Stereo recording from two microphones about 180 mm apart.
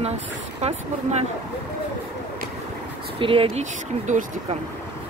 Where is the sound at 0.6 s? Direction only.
35° right (ahead or behind).